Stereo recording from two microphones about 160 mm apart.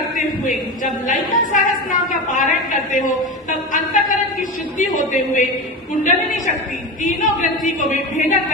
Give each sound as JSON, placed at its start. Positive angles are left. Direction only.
{"t": 1.0, "sound": "a woman's voice", "side_deg": 55}